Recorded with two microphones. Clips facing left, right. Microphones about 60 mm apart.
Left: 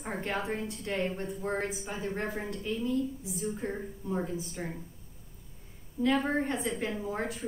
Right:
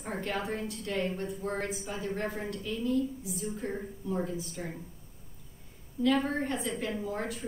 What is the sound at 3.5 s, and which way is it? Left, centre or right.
Speech, centre.